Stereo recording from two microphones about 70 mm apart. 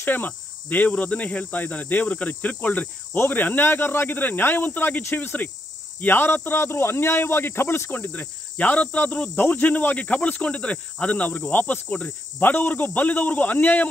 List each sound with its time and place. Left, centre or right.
0.0 s cricket: left
5.9 s speech: left
7.9 s cricket: left